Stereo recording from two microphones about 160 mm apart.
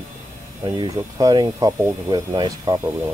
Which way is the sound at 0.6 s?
20° right (ahead or behind).